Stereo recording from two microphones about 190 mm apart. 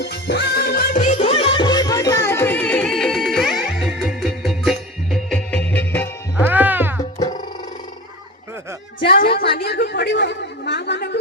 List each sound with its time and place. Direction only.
0.0 s music: 60° left (ahead or behind)
1.2 s music: 30° left (ahead or behind); by 6.4 s 10° left (ahead or behind)
6.4 s music: 10° right (ahead or behind)
9.0 s chatter: 55° left (ahead or behind)